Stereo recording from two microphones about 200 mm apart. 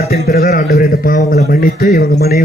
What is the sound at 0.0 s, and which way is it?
A man's voice, 50° left (ahead or behind).